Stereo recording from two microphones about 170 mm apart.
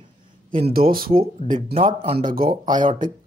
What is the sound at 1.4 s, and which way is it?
Speech, 35° left (ahead or behind).